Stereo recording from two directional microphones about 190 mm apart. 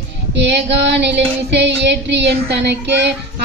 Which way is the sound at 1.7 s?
65° right (ahead or behind).